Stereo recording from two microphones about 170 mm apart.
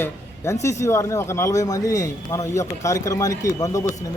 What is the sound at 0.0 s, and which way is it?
Speech, 15° left (ahead or behind).